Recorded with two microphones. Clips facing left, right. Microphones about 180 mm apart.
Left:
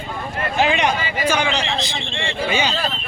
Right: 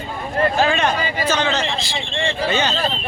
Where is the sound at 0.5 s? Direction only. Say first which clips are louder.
Even; 15° left (ahead or behind).